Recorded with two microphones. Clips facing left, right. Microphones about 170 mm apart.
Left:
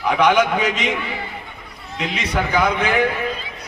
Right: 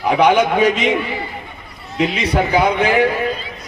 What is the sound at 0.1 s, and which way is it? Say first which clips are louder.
Speech: right 3 dB; 35° right (ahead or behind).